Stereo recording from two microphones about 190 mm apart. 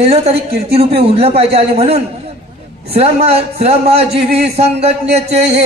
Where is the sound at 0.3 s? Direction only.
55° right (ahead or behind).